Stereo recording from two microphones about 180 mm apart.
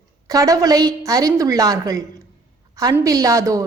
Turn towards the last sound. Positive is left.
turn(degrees=-15)  # may be behind; listen again after turning